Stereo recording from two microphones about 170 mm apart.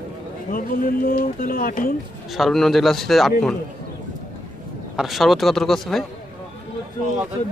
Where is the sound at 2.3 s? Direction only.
Centre (ahead or behind).